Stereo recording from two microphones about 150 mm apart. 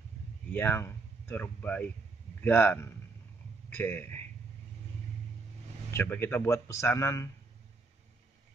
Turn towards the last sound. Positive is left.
turn(degrees=20)  # may be behind; listen again after turning